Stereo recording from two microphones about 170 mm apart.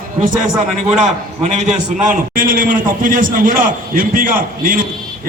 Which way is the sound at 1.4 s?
45° right (ahead or behind).